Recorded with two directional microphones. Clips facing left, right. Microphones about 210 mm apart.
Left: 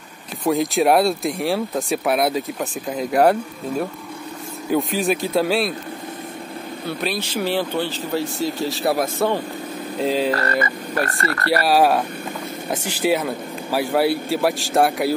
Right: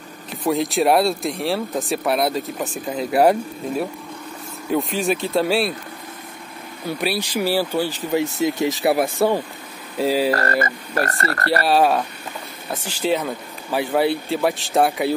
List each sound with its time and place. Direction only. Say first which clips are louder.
0.4 s speech: left 1 dB; centre (ahead or behind)
6.9 s speech: right 2 dB; 10° right (ahead or behind)
10.3 s frog: right 1 dB; 45° right (ahead or behind)
11.6 s speech: left 1 dB; 5° left (ahead or behind)